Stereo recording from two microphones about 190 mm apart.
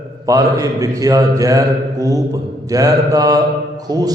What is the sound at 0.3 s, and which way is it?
A man's voice, 15° right (ahead or behind).